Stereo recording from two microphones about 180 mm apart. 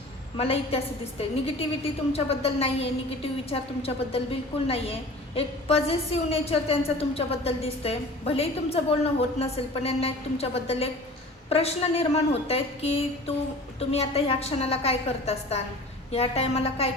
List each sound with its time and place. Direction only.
0.3 s a woman's voice: 35° left (ahead or behind)
2.1 s a woman's voice: 35° left (ahead or behind)